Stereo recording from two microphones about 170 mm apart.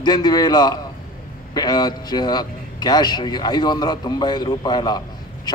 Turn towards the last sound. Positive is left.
turn(degrees=25)  # may be behind; listen again after turning